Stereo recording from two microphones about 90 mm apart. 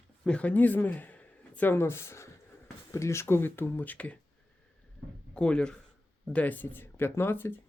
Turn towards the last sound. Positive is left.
turn(degrees=25)  # may be behind; listen again after turning